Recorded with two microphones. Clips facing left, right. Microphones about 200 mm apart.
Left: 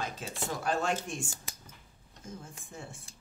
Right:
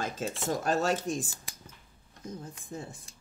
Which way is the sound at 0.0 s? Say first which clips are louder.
Right 4 dB; 45° right (ahead or behind).